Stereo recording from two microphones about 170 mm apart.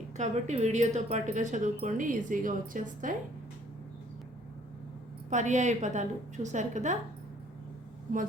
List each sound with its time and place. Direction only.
0.2 s speech: 40° right (ahead or behind)
5.3 s speech: 45° right (ahead or behind)